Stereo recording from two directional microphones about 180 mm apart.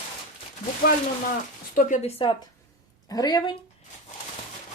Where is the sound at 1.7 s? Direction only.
45° left (ahead or behind).